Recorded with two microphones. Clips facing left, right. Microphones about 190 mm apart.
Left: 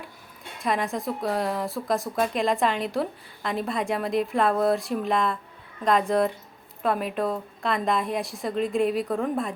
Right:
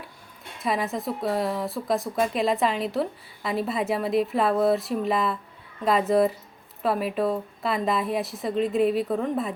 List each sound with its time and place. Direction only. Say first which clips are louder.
0.6 s a woman's voice: even; centre (ahead or behind)